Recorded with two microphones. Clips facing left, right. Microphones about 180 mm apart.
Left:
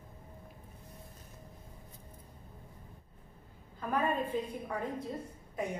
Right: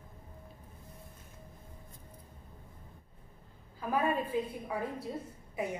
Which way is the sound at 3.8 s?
5° right (ahead or behind).